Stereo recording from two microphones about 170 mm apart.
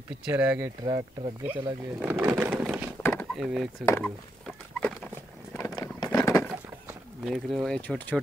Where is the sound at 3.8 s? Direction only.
15° left (ahead or behind).